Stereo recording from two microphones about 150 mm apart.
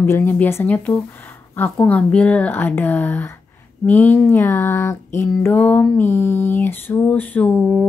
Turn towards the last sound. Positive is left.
turn(degrees=10)  # may be behind; listen again after turning